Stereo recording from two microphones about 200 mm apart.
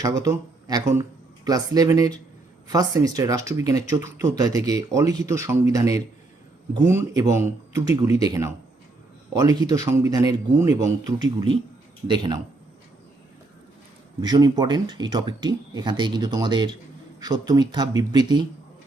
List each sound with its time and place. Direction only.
0.2 s speech: 15° right (ahead or behind)
14.2 s speech: 20° right (ahead or behind)